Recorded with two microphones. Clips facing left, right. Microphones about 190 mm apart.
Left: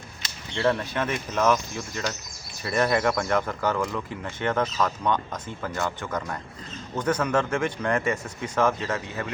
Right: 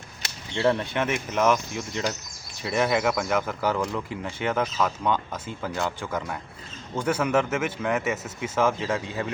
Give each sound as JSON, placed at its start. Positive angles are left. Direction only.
{"t": 0.5, "sound": "speech", "side_deg": -15}